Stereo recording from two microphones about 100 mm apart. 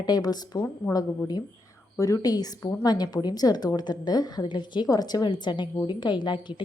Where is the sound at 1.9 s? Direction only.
35° left (ahead or behind).